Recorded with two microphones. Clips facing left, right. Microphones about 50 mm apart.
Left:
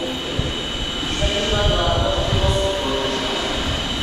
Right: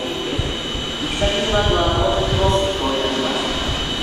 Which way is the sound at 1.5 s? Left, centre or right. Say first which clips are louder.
Right 1 dB; right.